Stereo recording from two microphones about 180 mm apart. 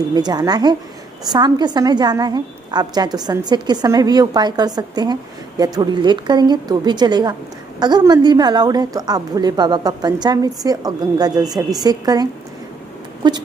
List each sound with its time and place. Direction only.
0.1 s a woman's voice: 20° right (ahead or behind)